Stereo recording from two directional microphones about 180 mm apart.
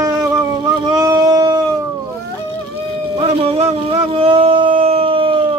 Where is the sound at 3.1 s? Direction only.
35° right (ahead or behind).